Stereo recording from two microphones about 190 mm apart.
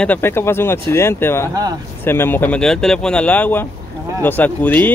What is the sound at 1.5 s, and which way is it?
Speech, 20° right (ahead or behind).